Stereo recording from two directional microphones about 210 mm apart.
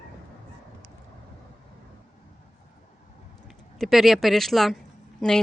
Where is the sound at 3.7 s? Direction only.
Centre (ahead or behind).